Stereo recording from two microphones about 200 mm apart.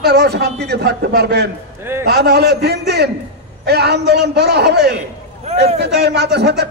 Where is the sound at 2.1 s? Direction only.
55° right (ahead or behind).